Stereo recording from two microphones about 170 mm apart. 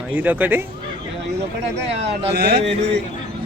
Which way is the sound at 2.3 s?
75° right (ahead or behind).